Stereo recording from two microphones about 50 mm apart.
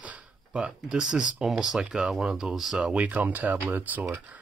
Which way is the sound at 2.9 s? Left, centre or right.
Right.